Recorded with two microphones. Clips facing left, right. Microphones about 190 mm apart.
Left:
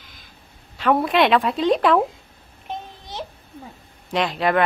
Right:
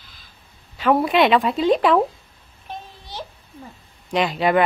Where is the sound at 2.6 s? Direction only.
20° left (ahead or behind).